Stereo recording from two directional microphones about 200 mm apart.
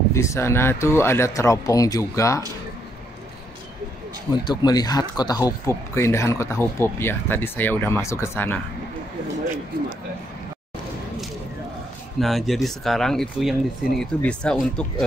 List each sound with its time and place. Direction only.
0.1 s speech: 15° left (ahead or behind)
4.3 s speech: 20° left (ahead or behind)
12.2 s speech: centre (ahead or behind)